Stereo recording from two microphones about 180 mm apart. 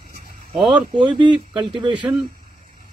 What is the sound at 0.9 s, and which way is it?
Speech, 25° right (ahead or behind).